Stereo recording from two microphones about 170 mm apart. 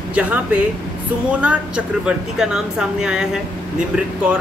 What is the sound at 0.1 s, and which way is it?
Speech, 10° right (ahead or behind).